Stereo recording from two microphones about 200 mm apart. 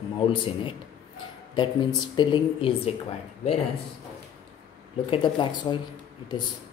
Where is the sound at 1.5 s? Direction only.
25° left (ahead or behind).